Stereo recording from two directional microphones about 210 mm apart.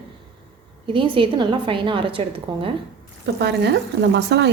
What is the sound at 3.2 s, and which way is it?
Speech, 55° right (ahead or behind).